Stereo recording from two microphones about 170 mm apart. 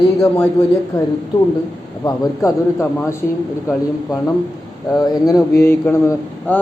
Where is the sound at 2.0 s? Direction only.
25° left (ahead or behind).